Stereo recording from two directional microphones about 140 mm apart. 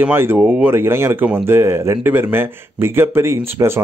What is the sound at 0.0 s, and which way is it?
Speech, 15° right (ahead or behind).